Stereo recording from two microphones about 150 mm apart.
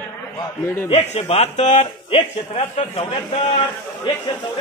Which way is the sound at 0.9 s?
45° left (ahead or behind).